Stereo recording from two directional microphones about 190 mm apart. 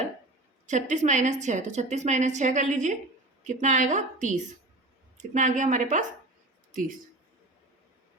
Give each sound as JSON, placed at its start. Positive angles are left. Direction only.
{"t": 0.7, "sound": "a woman's voice", "side_deg": -40}